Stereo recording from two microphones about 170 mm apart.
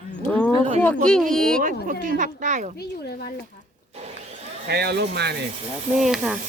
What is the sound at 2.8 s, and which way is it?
Speech, 75° left (ahead or behind).